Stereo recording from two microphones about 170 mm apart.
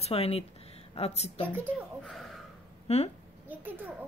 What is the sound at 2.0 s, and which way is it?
Speech, centre (ahead or behind).